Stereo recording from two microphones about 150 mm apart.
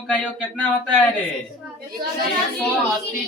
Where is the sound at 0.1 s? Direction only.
10° left (ahead or behind).